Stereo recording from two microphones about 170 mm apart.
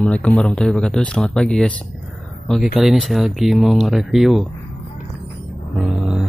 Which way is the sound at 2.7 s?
Centre (ahead or behind).